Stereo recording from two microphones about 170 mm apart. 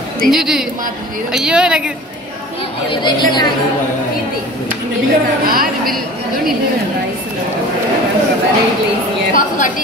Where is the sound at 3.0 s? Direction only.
25° left (ahead or behind).